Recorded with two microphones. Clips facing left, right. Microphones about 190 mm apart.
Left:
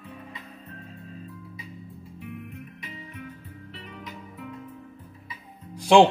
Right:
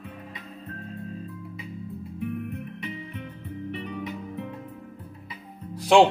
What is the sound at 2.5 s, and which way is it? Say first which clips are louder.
Music: right 7 dB; 65° right (ahead or behind).